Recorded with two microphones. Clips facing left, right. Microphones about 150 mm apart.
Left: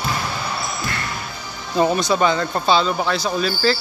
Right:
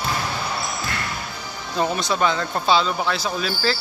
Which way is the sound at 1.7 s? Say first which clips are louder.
Left 5 dB; 5° left (ahead or behind).